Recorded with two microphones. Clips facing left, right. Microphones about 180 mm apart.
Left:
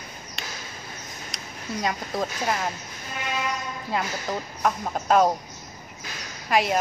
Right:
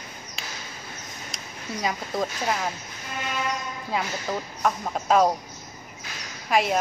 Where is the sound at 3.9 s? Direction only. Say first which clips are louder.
Even; centre (ahead or behind).